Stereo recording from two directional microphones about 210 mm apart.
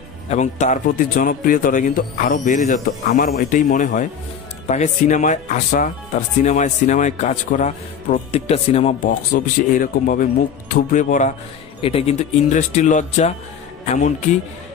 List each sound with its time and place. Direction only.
0.3 s speech: 35° left (ahead or behind)
9.3 s speech: 40° left (ahead or behind)